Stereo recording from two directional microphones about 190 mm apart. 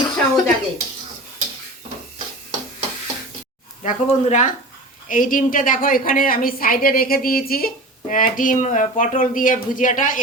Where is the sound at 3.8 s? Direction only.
35° left (ahead or behind).